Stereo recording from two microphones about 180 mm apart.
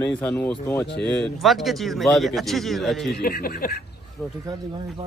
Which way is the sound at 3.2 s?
55° left (ahead or behind).